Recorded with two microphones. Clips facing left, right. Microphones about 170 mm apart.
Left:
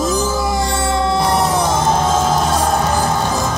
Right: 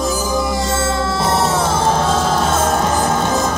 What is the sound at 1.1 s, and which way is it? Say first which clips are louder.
Music: left 1 dB; 25° right (ahead or behind).